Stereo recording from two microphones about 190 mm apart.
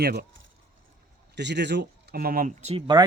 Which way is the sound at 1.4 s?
65° right (ahead or behind).